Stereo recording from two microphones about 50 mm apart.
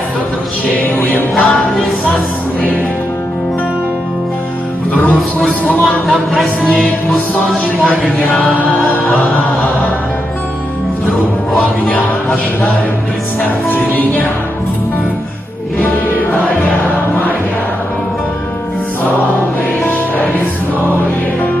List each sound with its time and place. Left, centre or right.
0.8 s music: left
1.3 s choir: centre
5.7 s speech: centre
7.6 s a man's voice: centre
13.7 s music: left